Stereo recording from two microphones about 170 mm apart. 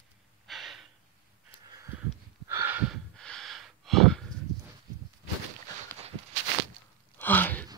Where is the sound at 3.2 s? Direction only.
5° left (ahead or behind).